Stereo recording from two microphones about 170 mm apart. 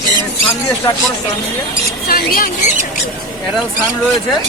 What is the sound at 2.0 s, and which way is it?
Speech, 60° left (ahead or behind).